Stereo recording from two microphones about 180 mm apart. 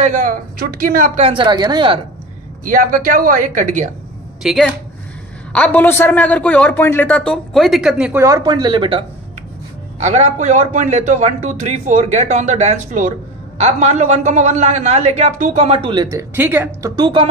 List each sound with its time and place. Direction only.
0.0 s a man's voice: 50° right (ahead or behind); by 2.0 s 25° right (ahead or behind)
2.6 s speech: 50° right (ahead or behind)
4.4 s a man's voice: centre (ahead or behind); by 9.0 s 25° right (ahead or behind)
9.9 s a man's voice: 40° right (ahead or behind); by 16.9 s 10° right (ahead or behind)
16.9 s speech: 25° right (ahead or behind)